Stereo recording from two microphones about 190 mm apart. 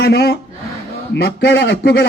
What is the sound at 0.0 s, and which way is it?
A man's voice, 55° left (ahead or behind).